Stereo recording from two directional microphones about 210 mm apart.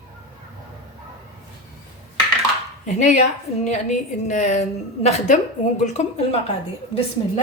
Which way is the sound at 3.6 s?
35° left (ahead or behind).